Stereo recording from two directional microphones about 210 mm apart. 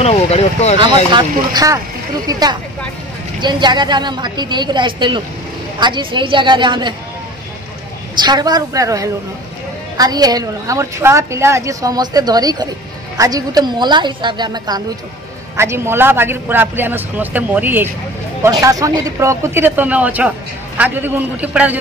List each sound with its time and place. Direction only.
0.0 s speech: 30° left (ahead or behind)
1.1 s a woman's voice: 20° right (ahead or behind)
8.2 s a woman's voice: 20° right (ahead or behind)